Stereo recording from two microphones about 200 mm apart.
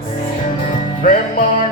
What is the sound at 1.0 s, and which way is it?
Music, 45° left (ahead or behind).